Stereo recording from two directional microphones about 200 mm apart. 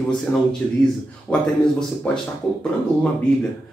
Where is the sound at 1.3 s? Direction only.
5° left (ahead or behind).